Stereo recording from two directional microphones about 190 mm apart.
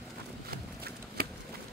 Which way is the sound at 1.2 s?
50° right (ahead or behind).